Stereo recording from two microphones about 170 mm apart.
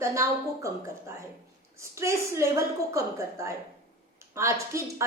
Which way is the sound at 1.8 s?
15° right (ahead or behind).